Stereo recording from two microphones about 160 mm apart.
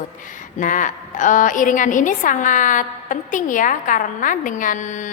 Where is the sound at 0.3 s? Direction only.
55° left (ahead or behind).